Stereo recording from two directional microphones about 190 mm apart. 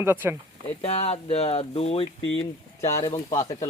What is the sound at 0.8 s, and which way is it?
Speech, 35° left (ahead or behind).